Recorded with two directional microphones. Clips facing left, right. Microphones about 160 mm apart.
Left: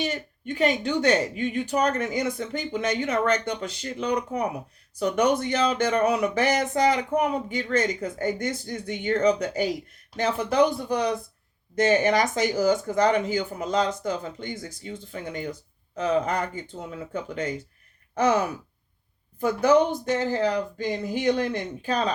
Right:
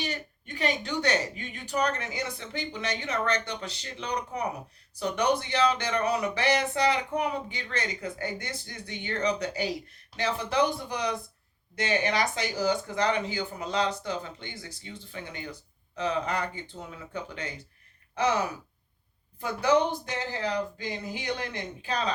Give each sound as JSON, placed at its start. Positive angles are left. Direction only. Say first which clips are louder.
{"t": 0.6, "sound": "speech", "louder": "left 6 dB", "side_deg": 45}
{"t": 18.1, "sound": "gasp", "louder": "left 5 dB", "side_deg": 50}
{"t": 19.4, "sound": "speech", "louder": "left 5 dB", "side_deg": 45}